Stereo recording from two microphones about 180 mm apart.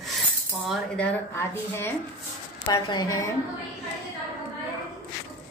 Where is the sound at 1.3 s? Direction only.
15° left (ahead or behind).